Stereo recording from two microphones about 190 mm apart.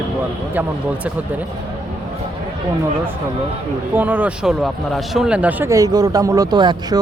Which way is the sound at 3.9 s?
10° right (ahead or behind).